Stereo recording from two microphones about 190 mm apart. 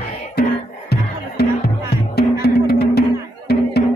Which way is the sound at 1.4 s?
55° left (ahead or behind).